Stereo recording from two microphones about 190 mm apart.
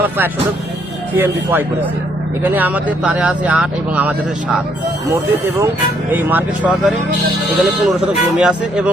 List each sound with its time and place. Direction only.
1.1 s speech: 10° right (ahead or behind)